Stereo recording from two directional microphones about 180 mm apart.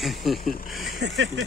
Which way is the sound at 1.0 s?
75° right (ahead or behind).